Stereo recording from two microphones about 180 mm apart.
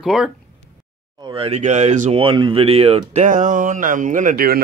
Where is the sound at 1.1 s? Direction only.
30° right (ahead or behind); by 4.6 s 55° right (ahead or behind).